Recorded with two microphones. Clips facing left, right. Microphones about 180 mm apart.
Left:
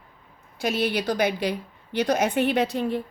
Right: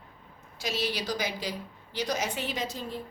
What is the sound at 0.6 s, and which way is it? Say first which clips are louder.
A woman's voice: left 7 dB; 55° left (ahead or behind).